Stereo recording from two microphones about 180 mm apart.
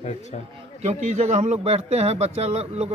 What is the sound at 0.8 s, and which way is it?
Speech, 40° right (ahead or behind).